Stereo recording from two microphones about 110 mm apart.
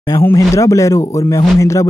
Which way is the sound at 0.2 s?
25° left (ahead or behind).